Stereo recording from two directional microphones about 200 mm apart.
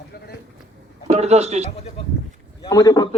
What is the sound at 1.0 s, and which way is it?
Speech, 35° right (ahead or behind).